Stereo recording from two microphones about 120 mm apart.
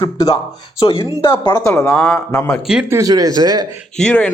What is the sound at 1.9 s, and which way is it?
Speech, 5° left (ahead or behind).